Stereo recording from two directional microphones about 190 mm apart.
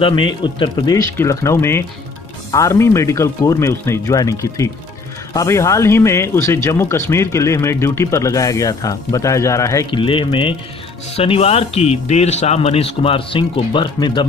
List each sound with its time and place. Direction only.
0.0 s a man's voice: 25° left (ahead or behind)
9.8 s a man's voice: 25° left (ahead or behind)